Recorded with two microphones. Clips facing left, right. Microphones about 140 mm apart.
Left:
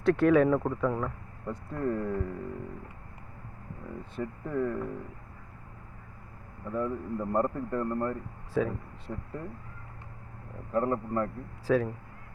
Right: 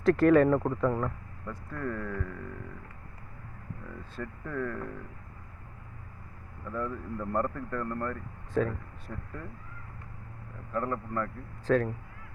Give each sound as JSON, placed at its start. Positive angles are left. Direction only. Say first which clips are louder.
{"t": 0.0, "sound": "speech", "louder": "right 1 dB", "side_deg": 0}
{"t": 1.5, "sound": "speech", "louder": "left 4 dB", "side_deg": 25}
{"t": 4.1, "sound": "speech", "louder": "left 4 dB", "side_deg": 20}
{"t": 6.7, "sound": "speech", "louder": "left 3 dB", "side_deg": 20}
{"t": 8.6, "sound": "speech", "louder": "even", "side_deg": 5}
{"t": 9.0, "sound": "speech", "louder": "left 3 dB", "side_deg": 20}
{"t": 10.7, "sound": "speech", "louder": "left 4 dB", "side_deg": 25}
{"t": 11.6, "sound": "speech", "louder": "even", "side_deg": 5}